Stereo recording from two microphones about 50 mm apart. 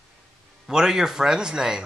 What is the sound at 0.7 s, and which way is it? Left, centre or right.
Speech, centre.